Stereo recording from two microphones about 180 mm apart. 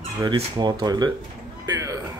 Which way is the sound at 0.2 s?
25° right (ahead or behind).